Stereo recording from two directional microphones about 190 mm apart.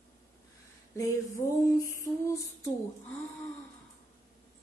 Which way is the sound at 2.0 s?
15° left (ahead or behind).